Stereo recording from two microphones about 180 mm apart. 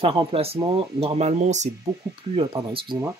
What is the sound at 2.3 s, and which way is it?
Speech, 30° right (ahead or behind).